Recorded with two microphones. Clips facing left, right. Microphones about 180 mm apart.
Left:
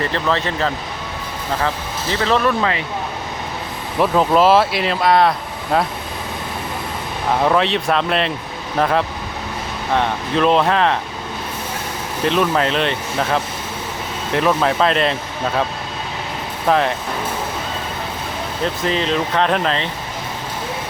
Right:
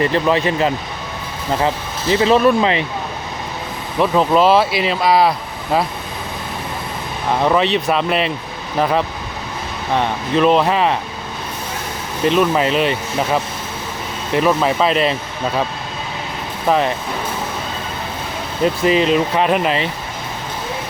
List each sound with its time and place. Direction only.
0.0 s speech: 15° right (ahead or behind)
4.0 s speech: centre (ahead or behind)
7.4 s speech: centre (ahead or behind)
12.2 s speech: 5° right (ahead or behind)
16.6 s speech: 5° right (ahead or behind)
18.6 s speech: 10° right (ahead or behind)